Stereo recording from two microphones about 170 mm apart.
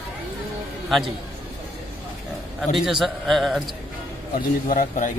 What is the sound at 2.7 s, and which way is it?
Speech, centre (ahead or behind).